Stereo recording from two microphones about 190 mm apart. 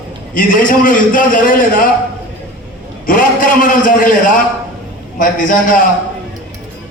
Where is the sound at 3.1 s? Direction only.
45° left (ahead or behind).